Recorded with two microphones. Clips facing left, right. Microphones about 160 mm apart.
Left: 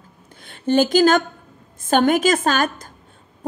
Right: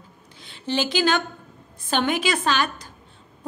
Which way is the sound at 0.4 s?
50° left (ahead or behind).